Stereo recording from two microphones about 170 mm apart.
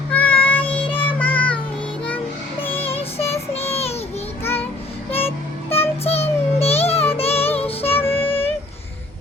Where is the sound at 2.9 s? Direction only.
35° left (ahead or behind).